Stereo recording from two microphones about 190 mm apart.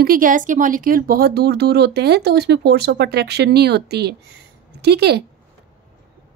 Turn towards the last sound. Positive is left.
turn(degrees=-60)  # may be behind; listen again after turning